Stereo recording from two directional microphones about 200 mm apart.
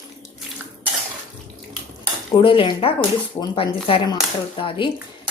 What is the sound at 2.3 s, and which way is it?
Speech, 25° left (ahead or behind).